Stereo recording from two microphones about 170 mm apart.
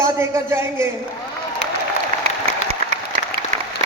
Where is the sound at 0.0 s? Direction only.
15° right (ahead or behind).